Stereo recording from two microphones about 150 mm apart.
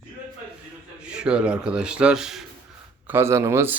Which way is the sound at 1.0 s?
5° right (ahead or behind).